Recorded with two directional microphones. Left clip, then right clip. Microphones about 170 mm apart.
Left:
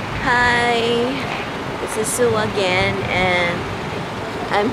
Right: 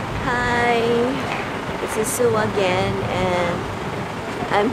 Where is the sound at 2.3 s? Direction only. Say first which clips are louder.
Left 1 dB; 5° right (ahead or behind).